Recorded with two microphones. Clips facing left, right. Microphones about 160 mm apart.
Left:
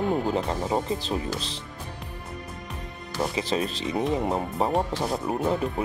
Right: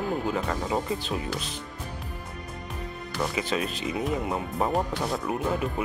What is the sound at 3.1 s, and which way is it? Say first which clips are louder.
Speech: left 2 dB; 25° left (ahead or behind).